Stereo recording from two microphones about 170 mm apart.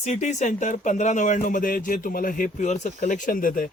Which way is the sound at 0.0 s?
40° left (ahead or behind).